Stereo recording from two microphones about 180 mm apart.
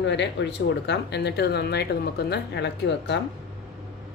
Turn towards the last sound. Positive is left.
turn(degrees=75)  # may be behind; listen again after turning